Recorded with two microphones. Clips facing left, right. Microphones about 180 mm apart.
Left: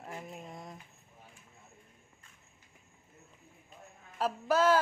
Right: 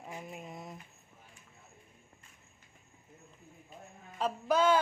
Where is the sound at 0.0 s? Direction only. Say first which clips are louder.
Even; centre (ahead or behind).